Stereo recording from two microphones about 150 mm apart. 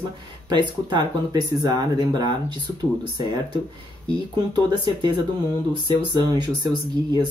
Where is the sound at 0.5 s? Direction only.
30° right (ahead or behind).